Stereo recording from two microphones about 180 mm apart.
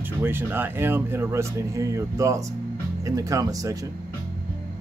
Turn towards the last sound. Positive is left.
turn(degrees=-20)  # may be behind; listen again after turning